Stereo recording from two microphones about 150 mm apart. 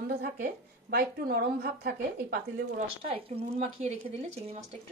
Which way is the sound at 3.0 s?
40° right (ahead or behind).